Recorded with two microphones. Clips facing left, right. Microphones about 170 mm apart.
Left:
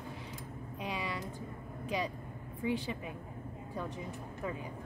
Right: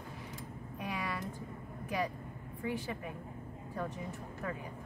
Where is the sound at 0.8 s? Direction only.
20° left (ahead or behind).